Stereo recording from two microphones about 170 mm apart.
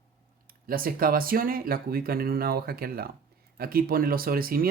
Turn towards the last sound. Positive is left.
turn(degrees=-60)  # may be behind; listen again after turning